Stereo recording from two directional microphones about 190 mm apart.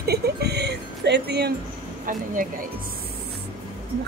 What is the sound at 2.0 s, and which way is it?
Speech, 45° right (ahead or behind).